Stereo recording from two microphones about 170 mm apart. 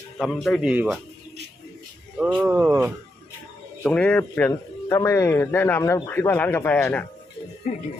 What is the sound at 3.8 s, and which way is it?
Speech, 5° left (ahead or behind).